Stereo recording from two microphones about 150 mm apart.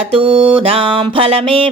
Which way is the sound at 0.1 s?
35° right (ahead or behind).